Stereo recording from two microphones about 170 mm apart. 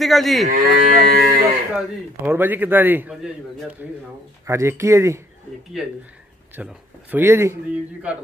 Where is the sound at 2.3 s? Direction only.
10° right (ahead or behind).